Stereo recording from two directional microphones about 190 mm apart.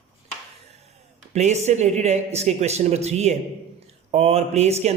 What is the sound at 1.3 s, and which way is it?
Speech, 35° right (ahead or behind).